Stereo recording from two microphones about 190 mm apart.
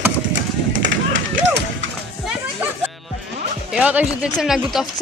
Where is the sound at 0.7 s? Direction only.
75° right (ahead or behind).